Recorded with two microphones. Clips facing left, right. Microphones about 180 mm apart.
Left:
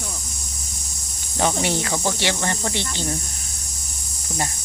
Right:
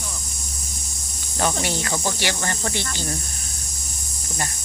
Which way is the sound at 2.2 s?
25° left (ahead or behind).